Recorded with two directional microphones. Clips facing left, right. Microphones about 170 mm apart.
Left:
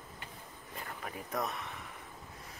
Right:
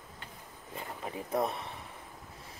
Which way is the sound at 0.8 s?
25° right (ahead or behind).